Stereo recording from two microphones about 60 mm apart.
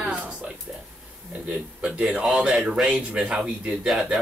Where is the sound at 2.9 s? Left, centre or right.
Right.